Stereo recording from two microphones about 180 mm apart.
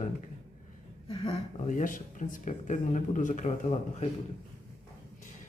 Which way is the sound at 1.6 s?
45° left (ahead or behind).